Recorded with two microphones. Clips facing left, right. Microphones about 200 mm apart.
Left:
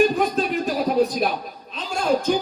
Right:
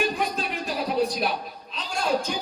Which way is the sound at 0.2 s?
45° left (ahead or behind).